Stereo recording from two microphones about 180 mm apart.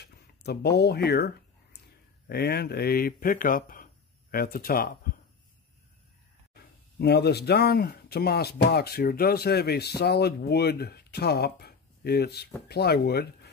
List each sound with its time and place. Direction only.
0.0 s a sound: 65° left (ahead or behind)
2.2 s speech: 60° left (ahead or behind)
6.5 s speech: 65° left (ahead or behind)